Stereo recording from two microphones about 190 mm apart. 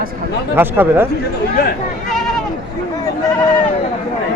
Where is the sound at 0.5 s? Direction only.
10° right (ahead or behind).